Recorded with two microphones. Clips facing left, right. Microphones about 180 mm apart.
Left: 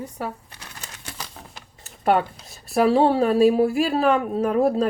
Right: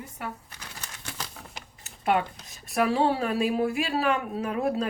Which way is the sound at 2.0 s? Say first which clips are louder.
Left 5 dB; 40° left (ahead or behind).